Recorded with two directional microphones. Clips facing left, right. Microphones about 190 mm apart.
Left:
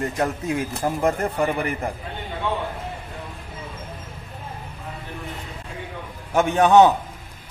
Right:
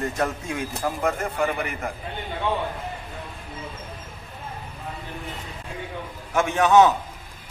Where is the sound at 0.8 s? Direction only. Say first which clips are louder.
Left 2 dB; 35° left (ahead or behind).